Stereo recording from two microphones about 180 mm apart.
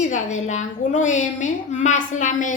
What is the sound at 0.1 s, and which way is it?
A woman's voice, 40° left (ahead or behind).